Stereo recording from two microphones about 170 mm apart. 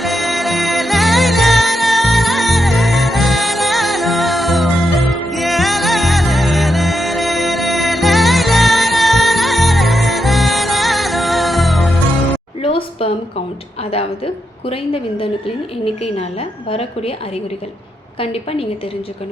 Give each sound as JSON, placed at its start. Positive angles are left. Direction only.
{"t": 0.0, "sound": "music", "side_deg": 0}
{"t": 12.6, "sound": "a sound", "side_deg": 35}
{"t": 16.1, "sound": "a woman's voice", "side_deg": 35}
{"t": 18.2, "sound": "a woman's voice", "side_deg": 35}